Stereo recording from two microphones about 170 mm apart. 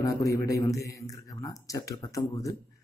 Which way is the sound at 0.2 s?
20° left (ahead or behind).